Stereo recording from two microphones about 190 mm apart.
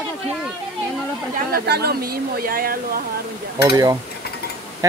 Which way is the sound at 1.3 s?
55° right (ahead or behind).